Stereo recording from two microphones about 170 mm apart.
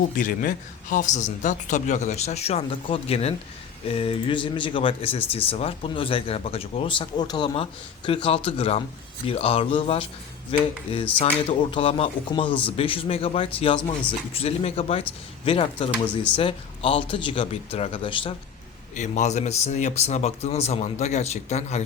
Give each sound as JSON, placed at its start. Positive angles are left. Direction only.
{"t": 0.2, "sound": "speech", "side_deg": 55}
{"t": 16.0, "sound": "speech", "side_deg": 5}
{"t": 16.4, "sound": "speech", "side_deg": 35}
{"t": 18.9, "sound": "speech", "side_deg": 45}